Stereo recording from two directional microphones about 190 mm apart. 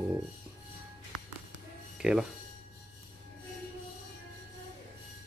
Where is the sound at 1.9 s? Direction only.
5° right (ahead or behind).